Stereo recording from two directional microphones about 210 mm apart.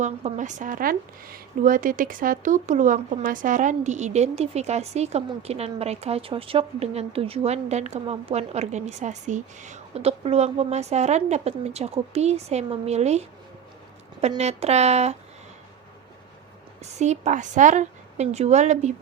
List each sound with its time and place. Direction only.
0.0 s speech: 35° right (ahead or behind)
16.8 s speech: 35° right (ahead or behind)